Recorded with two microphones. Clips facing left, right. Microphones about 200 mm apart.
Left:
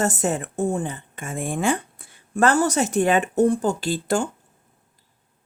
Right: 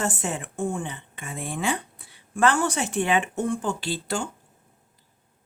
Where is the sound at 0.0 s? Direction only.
40° left (ahead or behind).